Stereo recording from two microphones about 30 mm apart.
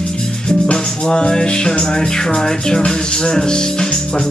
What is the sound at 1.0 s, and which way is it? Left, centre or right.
Speech, left.